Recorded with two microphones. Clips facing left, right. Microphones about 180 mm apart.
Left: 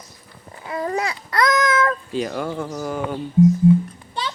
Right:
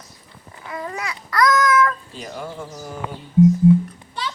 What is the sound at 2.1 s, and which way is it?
Speech, 85° left.